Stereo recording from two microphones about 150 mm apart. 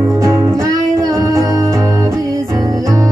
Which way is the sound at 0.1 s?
20° right (ahead or behind).